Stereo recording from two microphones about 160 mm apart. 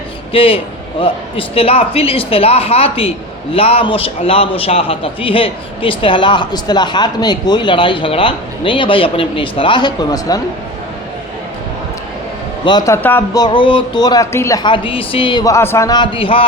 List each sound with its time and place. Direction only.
0.3 s a man's voice: 35° left (ahead or behind)
12.6 s a man's voice: 25° left (ahead or behind)
13.3 s speech: 30° left (ahead or behind)
14.6 s a man's voice: 30° left (ahead or behind)